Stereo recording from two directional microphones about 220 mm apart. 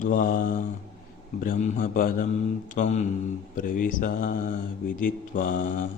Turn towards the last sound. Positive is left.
turn(degrees=35)  # may be behind; listen again after turning